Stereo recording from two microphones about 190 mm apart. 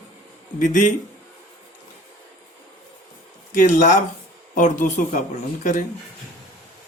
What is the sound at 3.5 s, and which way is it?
Speech, 40° left (ahead or behind).